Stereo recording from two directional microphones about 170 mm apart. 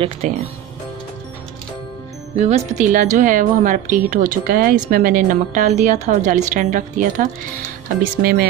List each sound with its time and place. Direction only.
0.2 s speech: 40° right (ahead or behind)
2.4 s a woman's voice: 40° right (ahead or behind)
8.2 s speech: 60° right (ahead or behind)